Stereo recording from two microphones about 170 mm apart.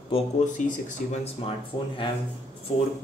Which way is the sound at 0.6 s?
45° left (ahead or behind).